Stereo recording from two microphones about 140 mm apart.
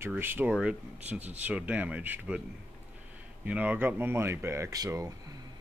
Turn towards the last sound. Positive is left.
turn(degrees=-25)  # may be behind; listen again after turning